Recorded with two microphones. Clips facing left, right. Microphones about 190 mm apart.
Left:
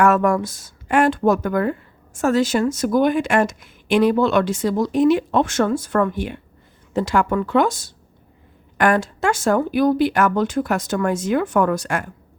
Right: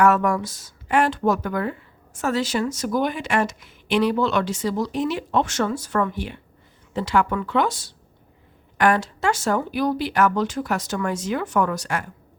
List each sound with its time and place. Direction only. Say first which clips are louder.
0.0 s speech: left 2 dB; 50° left (ahead or behind)